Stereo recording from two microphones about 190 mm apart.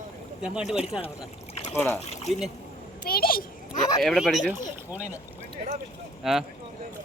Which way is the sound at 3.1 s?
50° left (ahead or behind).